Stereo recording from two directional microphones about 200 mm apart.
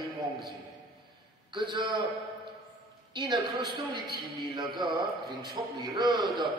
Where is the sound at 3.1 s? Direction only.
25° right (ahead or behind).